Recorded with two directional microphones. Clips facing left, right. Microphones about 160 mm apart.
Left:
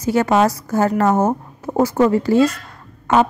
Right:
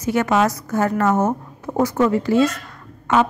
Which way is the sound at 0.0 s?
35° left (ahead or behind).